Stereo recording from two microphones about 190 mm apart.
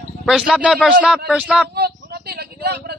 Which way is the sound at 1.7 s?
55° right (ahead or behind).